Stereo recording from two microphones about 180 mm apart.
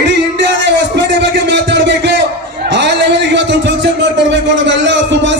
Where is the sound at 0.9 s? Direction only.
75° right (ahead or behind).